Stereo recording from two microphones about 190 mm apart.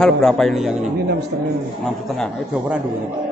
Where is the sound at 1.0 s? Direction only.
60° right (ahead or behind).